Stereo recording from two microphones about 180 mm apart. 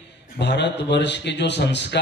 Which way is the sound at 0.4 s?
70° left (ahead or behind).